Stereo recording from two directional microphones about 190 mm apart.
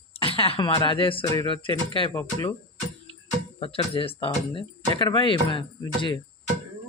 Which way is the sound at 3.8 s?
25° left (ahead or behind).